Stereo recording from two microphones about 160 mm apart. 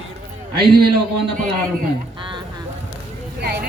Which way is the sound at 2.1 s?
30° right (ahead or behind).